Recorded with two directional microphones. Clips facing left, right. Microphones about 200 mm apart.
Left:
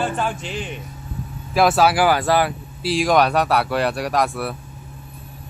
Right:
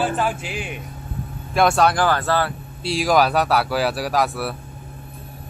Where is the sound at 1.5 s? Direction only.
Centre (ahead or behind).